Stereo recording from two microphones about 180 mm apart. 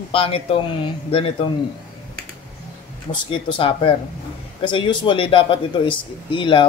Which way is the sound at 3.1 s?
25° left (ahead or behind).